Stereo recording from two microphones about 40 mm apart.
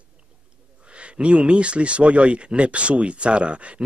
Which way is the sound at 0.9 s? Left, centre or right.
Right.